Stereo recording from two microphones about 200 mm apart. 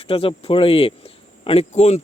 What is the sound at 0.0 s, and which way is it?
Speech, 30° left (ahead or behind).